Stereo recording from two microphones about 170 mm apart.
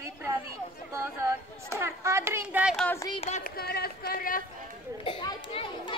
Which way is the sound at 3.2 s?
45° left (ahead or behind).